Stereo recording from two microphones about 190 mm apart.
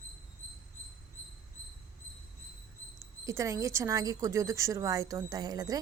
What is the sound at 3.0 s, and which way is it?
Speech, 15° right (ahead or behind).